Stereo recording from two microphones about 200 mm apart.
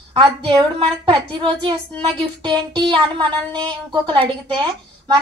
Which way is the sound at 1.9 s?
5° left (ahead or behind).